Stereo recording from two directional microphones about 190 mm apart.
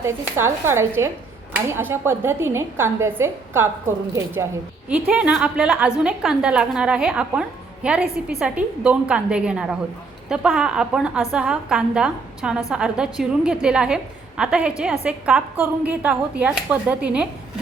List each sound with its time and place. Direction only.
0.0 s a woman's voice: 15° right (ahead or behind)